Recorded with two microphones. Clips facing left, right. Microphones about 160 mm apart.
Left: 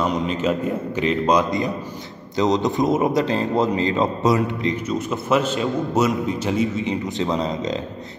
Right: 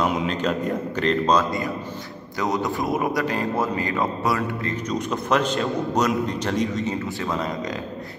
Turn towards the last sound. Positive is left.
turn(degrees=20)  # may be behind; listen again after turning